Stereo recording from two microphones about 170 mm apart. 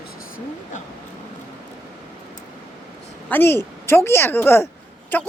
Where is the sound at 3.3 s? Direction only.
15° left (ahead or behind).